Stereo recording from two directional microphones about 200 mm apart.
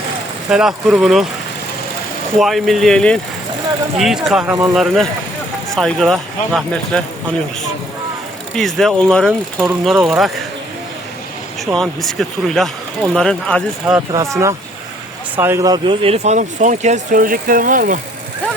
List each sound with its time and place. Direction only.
0.5 s speech: centre (ahead or behind)
2.4 s speech: centre (ahead or behind)
8.5 s speech: centre (ahead or behind)
11.6 s speech: centre (ahead or behind)
14.1 s speech: 15° right (ahead or behind); by 18.0 s 40° right (ahead or behind)